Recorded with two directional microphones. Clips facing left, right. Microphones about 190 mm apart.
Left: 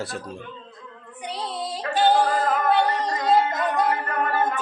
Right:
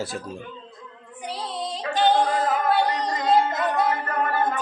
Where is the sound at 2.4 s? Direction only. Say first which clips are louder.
Left 1 dB; 5° right (ahead or behind).